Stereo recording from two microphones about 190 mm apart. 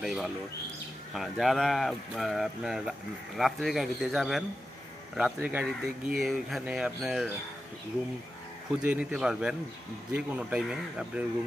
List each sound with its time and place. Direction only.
0.0 s speech: centre (ahead or behind)
8.7 s speech: 5° right (ahead or behind)